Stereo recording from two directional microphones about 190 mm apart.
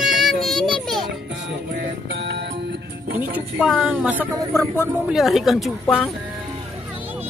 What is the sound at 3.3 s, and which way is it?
A woman's voice, 5° right (ahead or behind).